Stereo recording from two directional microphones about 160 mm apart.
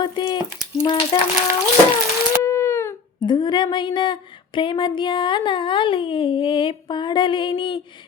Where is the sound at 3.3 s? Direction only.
30° left (ahead or behind).